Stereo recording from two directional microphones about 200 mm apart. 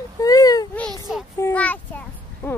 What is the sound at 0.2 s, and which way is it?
Baby cry, 20° left (ahead or behind).